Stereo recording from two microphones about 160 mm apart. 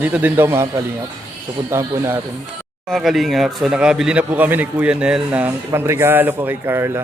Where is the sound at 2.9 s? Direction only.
Centre (ahead or behind).